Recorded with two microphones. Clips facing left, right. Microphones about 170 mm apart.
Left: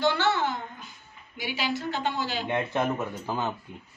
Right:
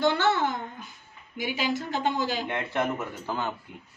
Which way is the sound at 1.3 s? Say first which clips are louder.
Right 2 dB; 45° right (ahead or behind).